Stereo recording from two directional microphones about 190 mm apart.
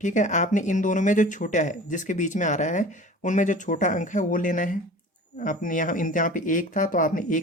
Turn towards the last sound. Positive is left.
turn(degrees=45)  # may be behind; listen again after turning